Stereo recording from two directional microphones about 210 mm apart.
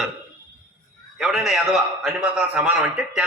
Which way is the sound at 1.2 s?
Centre (ahead or behind).